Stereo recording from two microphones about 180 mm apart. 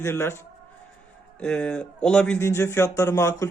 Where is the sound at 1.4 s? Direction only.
5° left (ahead or behind).